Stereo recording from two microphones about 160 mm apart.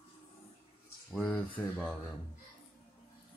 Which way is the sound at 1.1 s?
10° left (ahead or behind).